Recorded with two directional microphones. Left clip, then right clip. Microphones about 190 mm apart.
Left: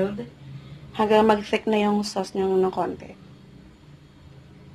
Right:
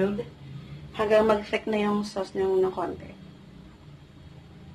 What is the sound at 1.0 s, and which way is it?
Speech, 45° left (ahead or behind).